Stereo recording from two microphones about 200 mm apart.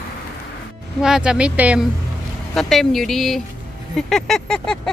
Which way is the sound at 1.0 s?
5° right (ahead or behind).